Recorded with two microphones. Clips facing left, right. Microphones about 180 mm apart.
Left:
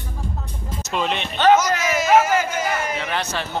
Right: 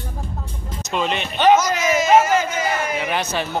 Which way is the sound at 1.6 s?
15° right (ahead or behind).